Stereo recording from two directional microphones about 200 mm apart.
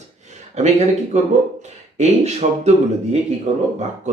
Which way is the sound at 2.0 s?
35° right (ahead or behind).